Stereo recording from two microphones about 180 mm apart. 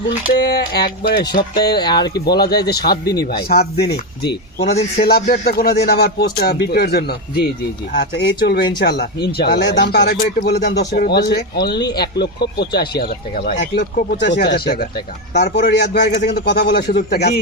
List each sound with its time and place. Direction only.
0.3 s speech: 65° left (ahead or behind)
1.4 s speech: 20° left (ahead or behind)
2.2 s speech: 65° left (ahead or behind)
3.0 s speech: 20° left (ahead or behind)
3.2 s speech: 60° left (ahead or behind)
4.6 s speech: 35° left (ahead or behind); by 14.6 s 65° left (ahead or behind)
14.8 s speech: 45° left (ahead or behind)
15.5 s speech: 70° left (ahead or behind)